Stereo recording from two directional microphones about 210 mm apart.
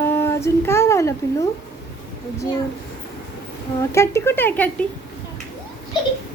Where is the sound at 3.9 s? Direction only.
15° left (ahead or behind).